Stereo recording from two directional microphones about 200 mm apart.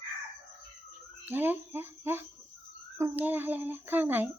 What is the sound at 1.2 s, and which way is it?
A child's voice, 10° right (ahead or behind).